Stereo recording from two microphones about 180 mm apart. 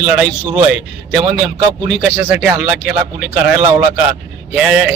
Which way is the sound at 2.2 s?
5° right (ahead or behind).